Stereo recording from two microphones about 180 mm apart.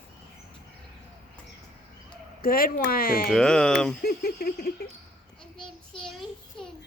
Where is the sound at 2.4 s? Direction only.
55° left (ahead or behind).